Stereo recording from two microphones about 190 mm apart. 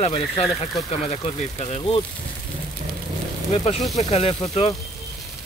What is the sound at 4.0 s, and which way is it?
Speech, 35° left (ahead or behind).